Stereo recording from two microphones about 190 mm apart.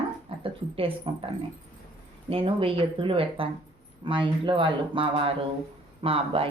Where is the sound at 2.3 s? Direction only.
30° right (ahead or behind).